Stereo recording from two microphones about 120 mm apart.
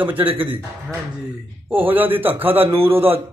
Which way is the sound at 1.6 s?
15° right (ahead or behind).